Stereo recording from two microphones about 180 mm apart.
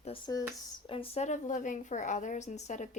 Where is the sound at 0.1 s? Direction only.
30° left (ahead or behind).